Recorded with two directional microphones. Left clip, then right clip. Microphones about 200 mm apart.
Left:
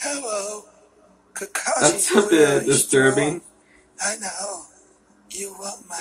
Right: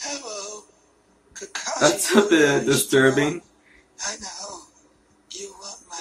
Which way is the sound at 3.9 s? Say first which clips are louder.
Left 4 dB; 60° left (ahead or behind).